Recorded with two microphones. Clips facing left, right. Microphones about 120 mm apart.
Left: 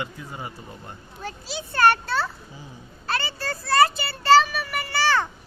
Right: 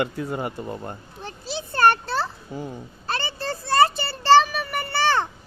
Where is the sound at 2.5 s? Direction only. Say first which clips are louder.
Right 11 dB; 60° right (ahead or behind).